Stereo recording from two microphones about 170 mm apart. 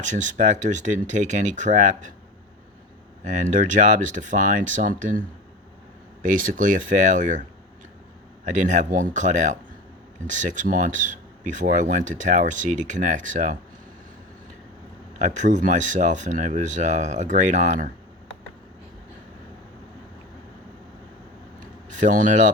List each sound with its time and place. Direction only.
0.0 s speech: 45° right (ahead or behind)
3.2 s speech: 45° right (ahead or behind)
6.2 s speech: 50° right (ahead or behind)
8.4 s speech: 45° right (ahead or behind)
15.2 s speech: 45° right (ahead or behind)
21.8 s speech: 50° right (ahead or behind)